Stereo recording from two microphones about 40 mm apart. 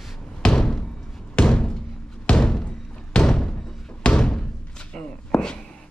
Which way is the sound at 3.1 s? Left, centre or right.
Left.